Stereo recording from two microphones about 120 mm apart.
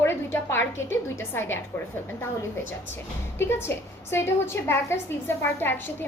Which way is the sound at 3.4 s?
20° left (ahead or behind).